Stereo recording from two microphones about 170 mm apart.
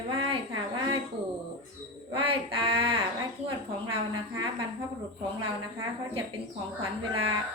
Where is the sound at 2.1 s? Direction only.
30° right (ahead or behind).